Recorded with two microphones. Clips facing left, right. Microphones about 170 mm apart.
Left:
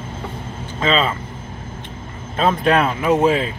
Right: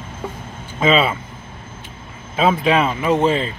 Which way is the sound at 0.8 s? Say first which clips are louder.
Right 3 dB; 10° right (ahead or behind).